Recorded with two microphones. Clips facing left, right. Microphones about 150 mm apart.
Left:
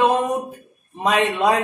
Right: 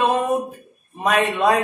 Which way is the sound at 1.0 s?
20° left (ahead or behind).